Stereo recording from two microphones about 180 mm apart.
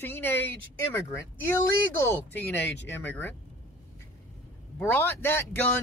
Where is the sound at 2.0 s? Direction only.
10° left (ahead or behind).